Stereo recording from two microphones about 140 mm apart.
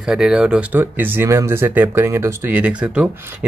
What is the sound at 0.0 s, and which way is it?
Speech, 5° right (ahead or behind).